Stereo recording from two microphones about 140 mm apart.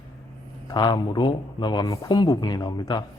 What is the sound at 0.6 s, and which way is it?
Speech, 35° left (ahead or behind).